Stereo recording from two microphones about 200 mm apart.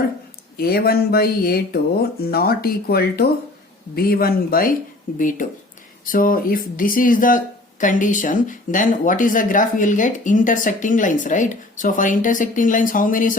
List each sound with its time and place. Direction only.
0.5 s speech: 50° left (ahead or behind)